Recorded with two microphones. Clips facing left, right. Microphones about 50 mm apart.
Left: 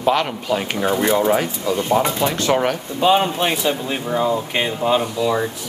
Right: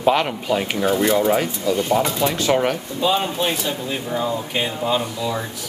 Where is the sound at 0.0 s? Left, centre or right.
Centre.